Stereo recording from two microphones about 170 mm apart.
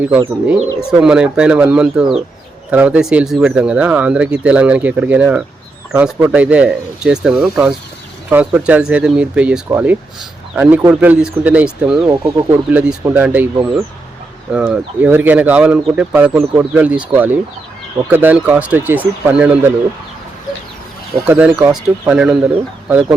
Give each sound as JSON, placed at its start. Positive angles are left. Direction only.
{"t": 0.0, "sound": "speech", "side_deg": -10}
{"t": 12.4, "sound": "speech", "side_deg": -15}
{"t": 21.2, "sound": "speech", "side_deg": -10}